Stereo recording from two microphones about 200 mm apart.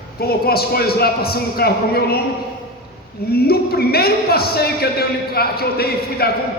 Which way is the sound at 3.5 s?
50° left (ahead or behind).